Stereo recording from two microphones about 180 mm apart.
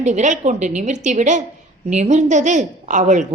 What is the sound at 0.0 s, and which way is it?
A woman's voice, 40° right (ahead or behind).